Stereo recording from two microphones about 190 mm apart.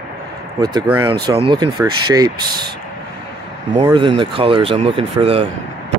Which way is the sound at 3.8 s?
30° right (ahead or behind).